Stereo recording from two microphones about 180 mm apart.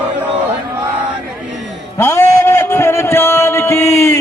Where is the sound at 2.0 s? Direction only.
15° left (ahead or behind).